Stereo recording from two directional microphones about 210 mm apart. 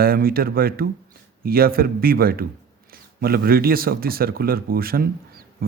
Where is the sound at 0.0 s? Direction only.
45° right (ahead or behind).